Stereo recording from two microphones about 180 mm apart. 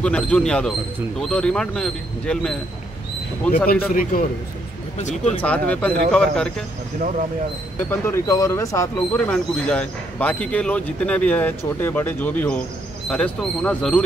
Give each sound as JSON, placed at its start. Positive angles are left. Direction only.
{"t": 0.0, "sound": "speech", "side_deg": 5}
{"t": 3.9, "sound": "a man's voice", "side_deg": 50}
{"t": 4.9, "sound": "speech", "side_deg": 40}
{"t": 5.4, "sound": "speech", "side_deg": 5}
{"t": 7.9, "sound": "speech", "side_deg": 15}